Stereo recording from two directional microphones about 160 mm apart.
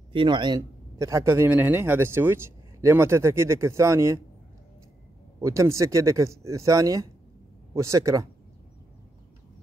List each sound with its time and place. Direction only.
0.1 s speech: 30° right (ahead or behind)
5.4 s speech: 20° right (ahead or behind)